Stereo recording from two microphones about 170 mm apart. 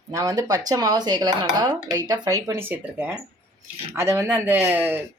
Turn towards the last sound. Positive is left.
turn(degrees=-10)  # may be behind; listen again after turning